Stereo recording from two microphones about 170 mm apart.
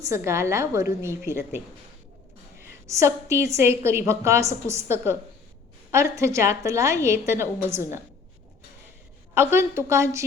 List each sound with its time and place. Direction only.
0.0 s a woman's voice: 15° right (ahead or behind)
2.8 s a woman's voice: 15° right (ahead or behind)
9.3 s a woman's voice: 15° right (ahead or behind)